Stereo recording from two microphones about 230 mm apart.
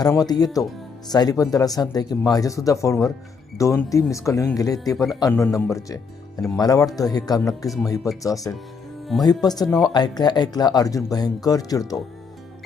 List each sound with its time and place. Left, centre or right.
0.0 s speech: centre